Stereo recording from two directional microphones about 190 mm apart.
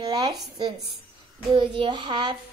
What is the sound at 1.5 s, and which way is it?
Speech, 25° right (ahead or behind).